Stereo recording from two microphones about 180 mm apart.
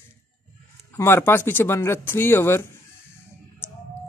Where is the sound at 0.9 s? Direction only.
10° left (ahead or behind).